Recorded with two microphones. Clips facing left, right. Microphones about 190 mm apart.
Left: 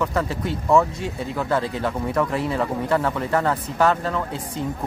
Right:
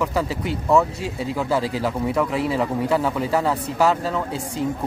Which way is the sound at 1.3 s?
5° right (ahead or behind).